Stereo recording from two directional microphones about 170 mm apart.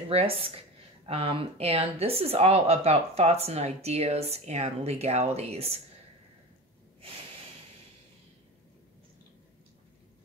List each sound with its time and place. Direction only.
0.1 s speech: 35° right (ahead or behind)